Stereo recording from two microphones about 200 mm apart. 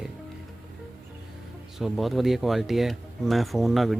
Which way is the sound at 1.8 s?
Centre (ahead or behind).